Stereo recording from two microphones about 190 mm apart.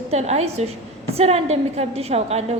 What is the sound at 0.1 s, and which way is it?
A woman's voice, 35° right (ahead or behind).